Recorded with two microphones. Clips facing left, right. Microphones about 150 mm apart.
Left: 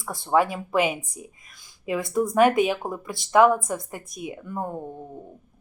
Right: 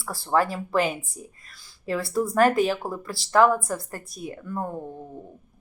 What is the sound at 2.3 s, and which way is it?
Speech, centre (ahead or behind).